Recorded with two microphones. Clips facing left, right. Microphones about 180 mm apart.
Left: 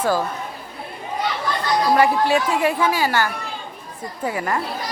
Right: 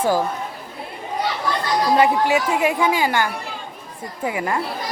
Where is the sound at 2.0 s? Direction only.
15° right (ahead or behind).